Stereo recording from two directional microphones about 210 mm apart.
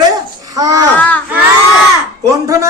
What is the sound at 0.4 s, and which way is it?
Babbling, 15° right (ahead or behind).